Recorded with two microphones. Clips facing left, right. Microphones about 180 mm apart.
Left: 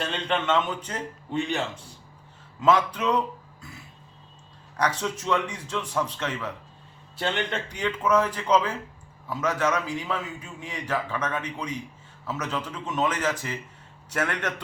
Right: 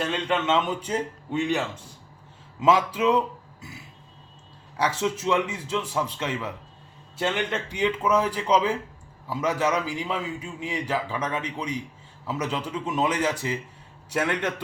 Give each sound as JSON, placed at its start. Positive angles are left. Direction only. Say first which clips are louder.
{"t": 0.1, "sound": "a man's voice", "louder": "left 1 dB", "side_deg": -5}
{"t": 4.8, "sound": "a man's voice", "louder": "right 2 dB", "side_deg": -5}